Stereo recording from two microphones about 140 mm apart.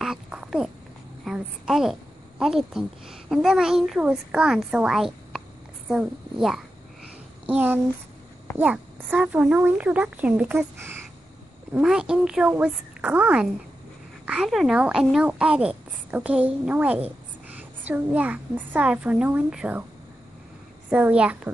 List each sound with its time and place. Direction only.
0.0 s babbling: 5° right (ahead or behind)
1.2 s a woman's voice: 5° right (ahead or behind)
20.9 s a woman's voice: 10° right (ahead or behind)